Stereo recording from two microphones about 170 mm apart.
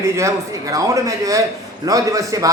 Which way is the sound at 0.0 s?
15° right (ahead or behind).